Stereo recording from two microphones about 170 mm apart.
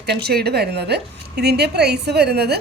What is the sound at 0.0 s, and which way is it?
Speech, 70° right (ahead or behind).